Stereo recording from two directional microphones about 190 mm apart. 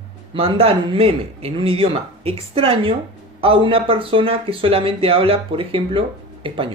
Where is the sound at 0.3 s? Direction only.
30° right (ahead or behind).